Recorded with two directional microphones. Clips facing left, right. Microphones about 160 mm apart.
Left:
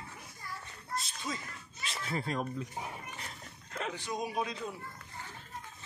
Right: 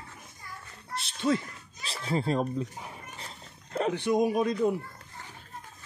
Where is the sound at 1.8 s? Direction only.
30° right (ahead or behind).